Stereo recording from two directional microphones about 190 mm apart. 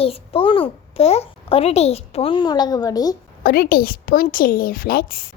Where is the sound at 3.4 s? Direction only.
50° left (ahead or behind).